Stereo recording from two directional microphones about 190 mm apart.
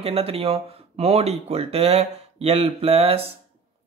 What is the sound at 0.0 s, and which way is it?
Speech, 30° right (ahead or behind).